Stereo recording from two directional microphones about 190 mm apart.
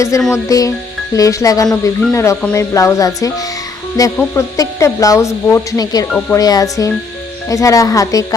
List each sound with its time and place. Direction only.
0.3 s speech: 15° left (ahead or behind)